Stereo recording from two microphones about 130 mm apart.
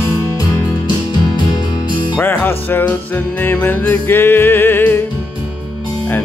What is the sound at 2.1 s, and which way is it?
Music, 15° left (ahead or behind).